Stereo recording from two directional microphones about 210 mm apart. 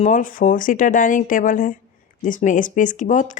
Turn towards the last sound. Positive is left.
turn(degrees=35)  # may be behind; listen again after turning